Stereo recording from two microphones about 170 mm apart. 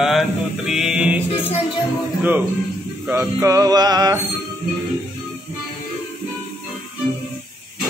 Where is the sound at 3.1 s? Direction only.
15° right (ahead or behind).